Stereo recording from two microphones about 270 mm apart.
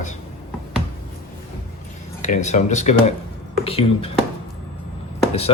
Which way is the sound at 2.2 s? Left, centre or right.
Left.